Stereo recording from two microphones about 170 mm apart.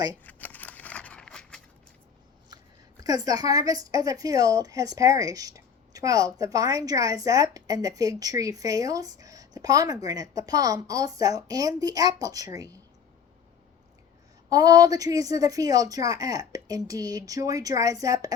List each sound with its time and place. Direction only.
0.3 s scissors: 10° left (ahead or behind)
3.0 s a woman's voice: 20° right (ahead or behind)
14.5 s a woman's voice: 20° right (ahead or behind)